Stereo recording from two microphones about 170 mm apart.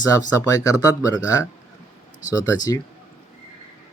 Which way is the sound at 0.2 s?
20° left (ahead or behind).